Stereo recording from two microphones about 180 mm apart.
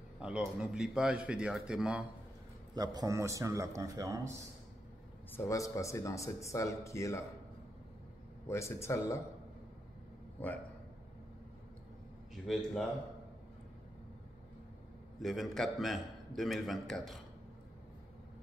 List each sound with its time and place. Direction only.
0.2 s a man's voice: 5° right (ahead or behind)
2.7 s a man's voice: 20° right (ahead or behind)
5.3 s speech: 15° left (ahead or behind)
8.5 s speech: 15° left (ahead or behind)
15.1 s a man's voice: centre (ahead or behind)